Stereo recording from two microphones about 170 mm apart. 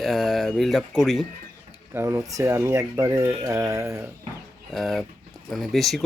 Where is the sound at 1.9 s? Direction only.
15° right (ahead or behind).